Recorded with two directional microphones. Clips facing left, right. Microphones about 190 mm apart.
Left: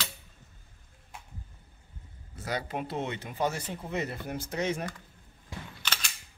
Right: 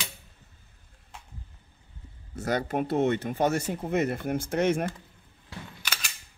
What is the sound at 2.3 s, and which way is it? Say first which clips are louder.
Speech: right 6 dB; 45° right (ahead or behind).